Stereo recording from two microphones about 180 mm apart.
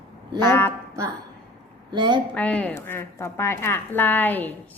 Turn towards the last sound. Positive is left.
turn(degrees=10)  # may be behind; listen again after turning